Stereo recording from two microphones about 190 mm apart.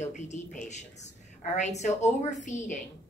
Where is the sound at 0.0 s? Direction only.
40° left (ahead or behind).